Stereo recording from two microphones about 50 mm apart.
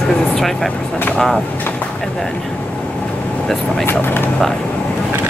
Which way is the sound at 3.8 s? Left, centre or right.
Left.